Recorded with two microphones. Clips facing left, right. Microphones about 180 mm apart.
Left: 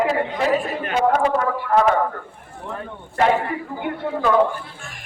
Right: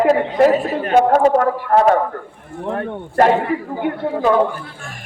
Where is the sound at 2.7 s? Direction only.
65° right (ahead or behind).